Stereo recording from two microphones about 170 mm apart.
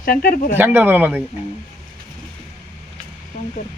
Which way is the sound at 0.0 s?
60° left (ahead or behind).